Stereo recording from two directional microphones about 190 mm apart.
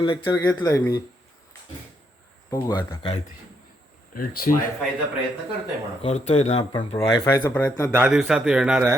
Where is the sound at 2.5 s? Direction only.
20° left (ahead or behind).